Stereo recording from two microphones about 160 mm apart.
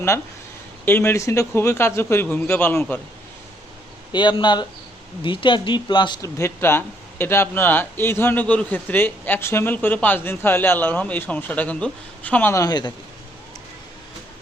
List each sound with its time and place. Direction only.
0.9 s speech: 15° left (ahead or behind)
4.1 s speech: 30° left (ahead or behind)